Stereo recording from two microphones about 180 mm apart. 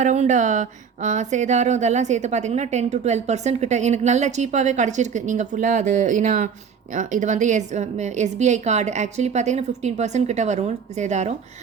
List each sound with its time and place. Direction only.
0.0 s speech: 40° right (ahead or behind)